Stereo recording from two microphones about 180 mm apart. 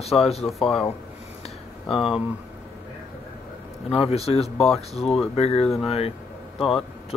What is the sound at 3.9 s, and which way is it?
Speech, 35° left (ahead or behind).